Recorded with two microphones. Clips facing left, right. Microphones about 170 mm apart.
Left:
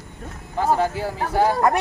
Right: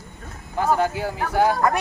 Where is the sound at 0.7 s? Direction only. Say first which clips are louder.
Even; centre (ahead or behind).